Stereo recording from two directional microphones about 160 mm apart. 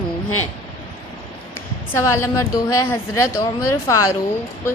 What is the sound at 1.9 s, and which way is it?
A woman's voice, 15° left (ahead or behind).